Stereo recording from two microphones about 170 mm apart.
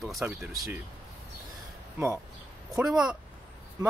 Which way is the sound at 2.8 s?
5° right (ahead or behind).